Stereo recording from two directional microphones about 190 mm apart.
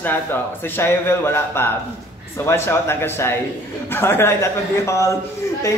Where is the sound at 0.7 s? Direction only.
10° left (ahead or behind).